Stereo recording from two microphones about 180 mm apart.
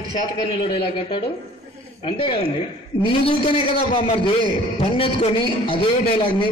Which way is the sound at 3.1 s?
30° left (ahead or behind).